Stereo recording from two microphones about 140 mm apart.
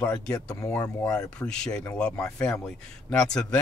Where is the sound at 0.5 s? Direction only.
20° left (ahead or behind).